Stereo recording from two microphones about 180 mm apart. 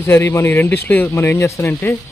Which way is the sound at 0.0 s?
15° left (ahead or behind).